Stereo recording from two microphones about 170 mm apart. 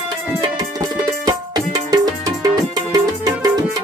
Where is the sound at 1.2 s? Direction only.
20° right (ahead or behind).